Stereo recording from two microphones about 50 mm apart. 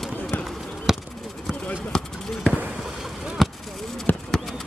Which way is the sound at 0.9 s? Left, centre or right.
Centre.